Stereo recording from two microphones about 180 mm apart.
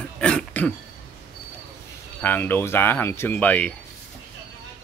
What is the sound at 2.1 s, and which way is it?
Speech, 10° left (ahead or behind).